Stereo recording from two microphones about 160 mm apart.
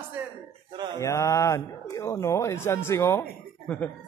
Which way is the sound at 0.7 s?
30° right (ahead or behind).